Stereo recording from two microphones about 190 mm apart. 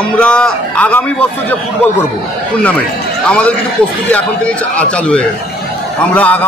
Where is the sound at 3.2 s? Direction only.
5° left (ahead or behind).